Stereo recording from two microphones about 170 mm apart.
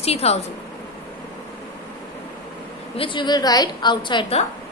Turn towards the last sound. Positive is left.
turn(degrees=30)  # may be behind; listen again after turning